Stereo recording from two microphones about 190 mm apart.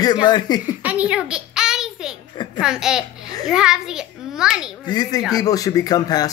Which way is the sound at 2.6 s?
5° right (ahead or behind).